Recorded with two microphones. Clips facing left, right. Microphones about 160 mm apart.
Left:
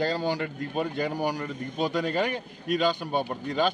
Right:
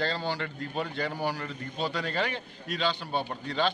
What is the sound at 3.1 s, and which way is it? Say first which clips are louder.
Speech: left 3 dB; 15° left (ahead or behind).